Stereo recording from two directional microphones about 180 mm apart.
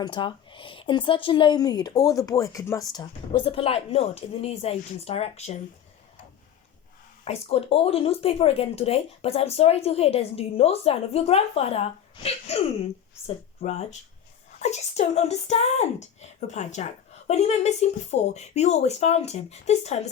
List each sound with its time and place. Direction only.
0.0 s speech: 25° left (ahead or behind)
7.3 s speech: 35° left (ahead or behind)